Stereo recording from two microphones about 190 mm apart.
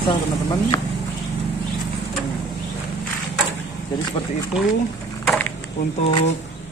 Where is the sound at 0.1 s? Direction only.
20° left (ahead or behind).